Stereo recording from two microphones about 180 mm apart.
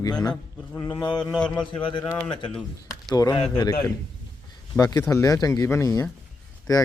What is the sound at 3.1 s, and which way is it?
Speech, 20° left (ahead or behind).